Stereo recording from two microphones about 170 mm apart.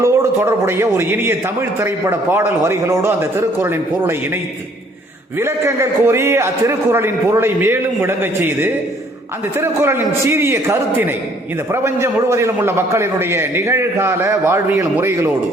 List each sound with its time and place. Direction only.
0.0 s a man's voice: 15° right (ahead or behind)
5.4 s a man's voice: 15° right (ahead or behind)